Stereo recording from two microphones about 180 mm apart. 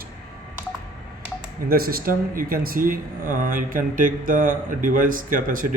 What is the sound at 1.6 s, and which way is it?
A man's voice, 55° right (ahead or behind).